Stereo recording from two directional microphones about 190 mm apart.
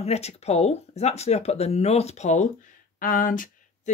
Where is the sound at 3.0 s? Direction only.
45° left (ahead or behind).